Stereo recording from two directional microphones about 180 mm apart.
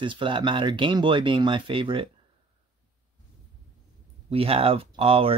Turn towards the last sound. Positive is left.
turn(degrees=-30)  # may be behind; listen again after turning